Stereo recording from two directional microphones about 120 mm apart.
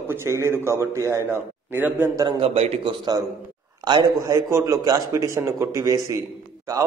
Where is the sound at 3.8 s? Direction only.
35° right (ahead or behind).